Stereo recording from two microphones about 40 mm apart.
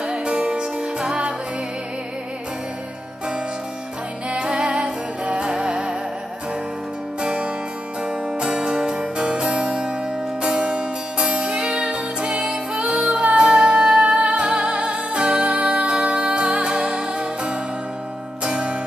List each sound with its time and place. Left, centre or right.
0.0 s music: right
4.3 s music: right
7.2 s music: right